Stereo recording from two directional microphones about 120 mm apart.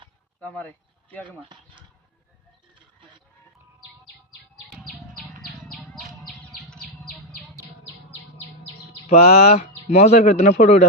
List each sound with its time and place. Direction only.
0.4 s speech: 15° left (ahead or behind)
1.4 s speech: 40° right (ahead or behind)
4.7 s bird: centre (ahead or behind)
8.6 s speech: 60° left (ahead or behind); by 10.8 s 80° left